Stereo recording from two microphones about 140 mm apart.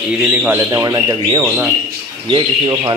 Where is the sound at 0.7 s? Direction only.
25° right (ahead or behind).